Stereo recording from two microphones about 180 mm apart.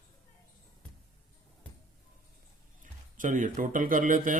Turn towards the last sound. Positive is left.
turn(degrees=-45)  # may be behind; listen again after turning